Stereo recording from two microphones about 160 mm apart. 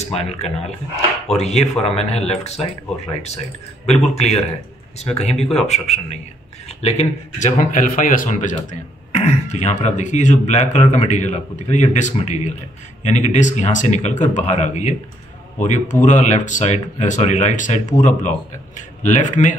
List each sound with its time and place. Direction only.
0.0 s speech: 40° left (ahead or behind)
3.8 s a man's voice: 40° left (ahead or behind)